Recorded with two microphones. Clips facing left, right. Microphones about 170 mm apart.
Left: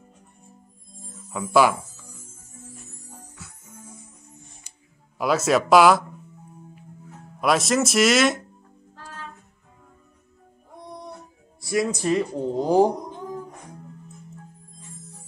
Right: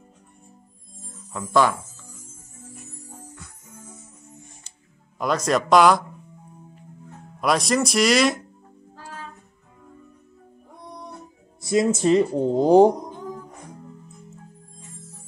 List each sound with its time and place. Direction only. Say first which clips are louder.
1.3 s speech: left 1 dB; 10° left (ahead or behind)
3.3 s music: even; 5° left (ahead or behind)
5.2 s speech: left 2 dB; 5° left (ahead or behind)
7.3 s speech: even; centre (ahead or behind)
11.6 s speech: right 4 dB; 25° right (ahead or behind)